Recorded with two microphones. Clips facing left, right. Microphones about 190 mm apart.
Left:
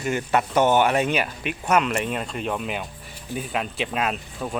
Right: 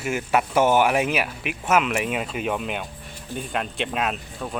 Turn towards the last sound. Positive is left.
turn(degrees=0)  # may be behind; listen again after turning